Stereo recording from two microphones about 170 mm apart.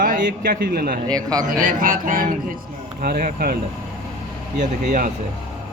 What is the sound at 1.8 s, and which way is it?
A man's voice, 55° right (ahead or behind).